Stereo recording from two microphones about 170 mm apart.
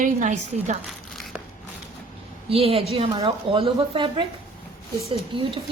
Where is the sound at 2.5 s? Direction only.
35° right (ahead or behind).